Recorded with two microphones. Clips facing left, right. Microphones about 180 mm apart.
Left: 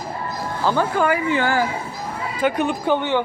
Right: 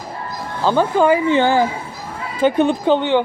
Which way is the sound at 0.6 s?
20° right (ahead or behind).